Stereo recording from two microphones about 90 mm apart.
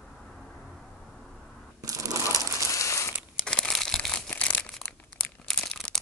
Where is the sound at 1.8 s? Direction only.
40° right (ahead or behind).